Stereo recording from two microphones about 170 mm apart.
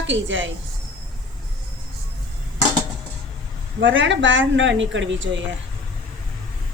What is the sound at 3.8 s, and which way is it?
A woman's voice, 90° right.